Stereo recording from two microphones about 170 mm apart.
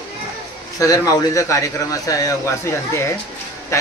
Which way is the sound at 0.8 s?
20° left (ahead or behind).